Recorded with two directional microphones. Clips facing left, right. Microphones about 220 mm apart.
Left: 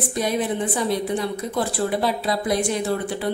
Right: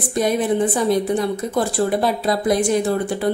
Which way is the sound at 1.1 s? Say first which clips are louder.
Right 4 dB; 45° right (ahead or behind).